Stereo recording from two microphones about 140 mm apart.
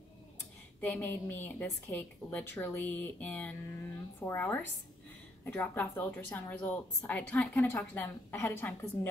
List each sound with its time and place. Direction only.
0.7 s a woman's voice: 10° left (ahead or behind)